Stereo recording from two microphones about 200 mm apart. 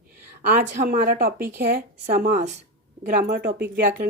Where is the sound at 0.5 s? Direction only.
35° right (ahead or behind).